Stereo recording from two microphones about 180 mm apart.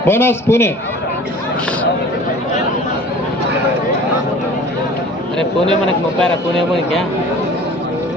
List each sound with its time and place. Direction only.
0.0 s speech: 10° left (ahead or behind)